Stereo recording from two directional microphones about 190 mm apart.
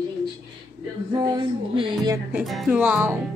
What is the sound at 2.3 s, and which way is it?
Speech, centre (ahead or behind).